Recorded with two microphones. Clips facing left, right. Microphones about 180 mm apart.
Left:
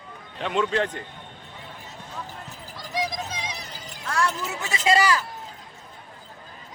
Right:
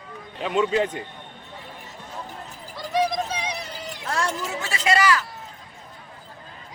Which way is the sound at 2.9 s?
60° right (ahead or behind).